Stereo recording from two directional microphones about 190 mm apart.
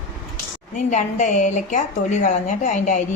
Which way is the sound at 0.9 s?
40° left (ahead or behind).